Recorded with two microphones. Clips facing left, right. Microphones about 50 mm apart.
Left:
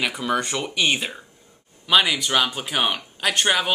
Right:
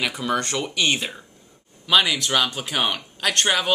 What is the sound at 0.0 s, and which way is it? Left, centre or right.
Speech, centre.